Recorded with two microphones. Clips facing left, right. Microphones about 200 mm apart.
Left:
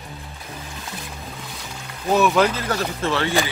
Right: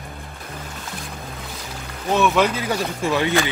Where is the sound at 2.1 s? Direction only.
Centre (ahead or behind).